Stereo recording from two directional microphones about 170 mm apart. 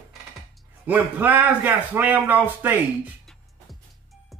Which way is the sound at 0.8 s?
10° right (ahead or behind).